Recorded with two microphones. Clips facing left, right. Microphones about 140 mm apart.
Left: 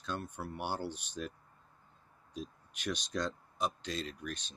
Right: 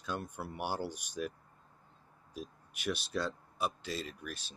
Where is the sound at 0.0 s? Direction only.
10° right (ahead or behind).